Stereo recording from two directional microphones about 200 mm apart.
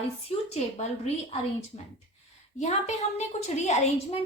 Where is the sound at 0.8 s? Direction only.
30° left (ahead or behind).